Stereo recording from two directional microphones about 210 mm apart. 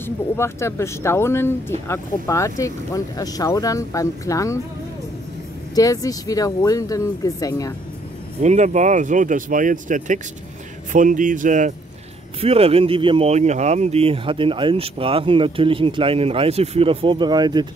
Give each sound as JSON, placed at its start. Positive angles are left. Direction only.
{"t": 0.0, "sound": "speech", "side_deg": 10}
{"t": 5.8, "sound": "speech", "side_deg": 15}
{"t": 8.4, "sound": "speech", "side_deg": -35}